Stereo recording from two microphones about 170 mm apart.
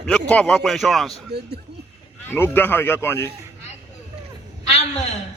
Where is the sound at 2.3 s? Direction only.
10° left (ahead or behind).